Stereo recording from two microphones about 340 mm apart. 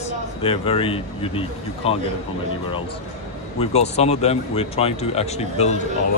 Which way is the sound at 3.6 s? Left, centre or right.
Centre.